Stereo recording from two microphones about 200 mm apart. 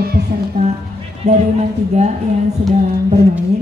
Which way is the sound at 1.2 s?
35° right (ahead or behind).